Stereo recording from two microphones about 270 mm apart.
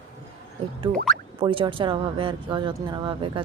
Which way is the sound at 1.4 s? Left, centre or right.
Centre.